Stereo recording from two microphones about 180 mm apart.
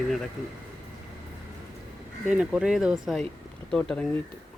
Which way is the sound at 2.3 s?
5° right (ahead or behind).